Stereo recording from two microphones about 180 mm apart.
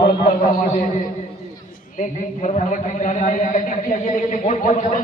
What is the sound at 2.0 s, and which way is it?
A man's voice, 40° left (ahead or behind).